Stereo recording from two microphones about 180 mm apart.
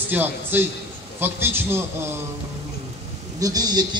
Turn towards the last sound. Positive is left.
turn(degrees=-20)  # may be behind; listen again after turning